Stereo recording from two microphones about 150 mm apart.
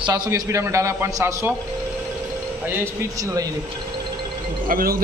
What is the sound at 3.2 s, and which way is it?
Speech, 25° right (ahead or behind).